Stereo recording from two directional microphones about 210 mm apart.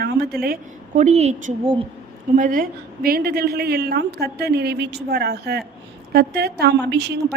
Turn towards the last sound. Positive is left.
turn(degrees=-50)  # may be behind; listen again after turning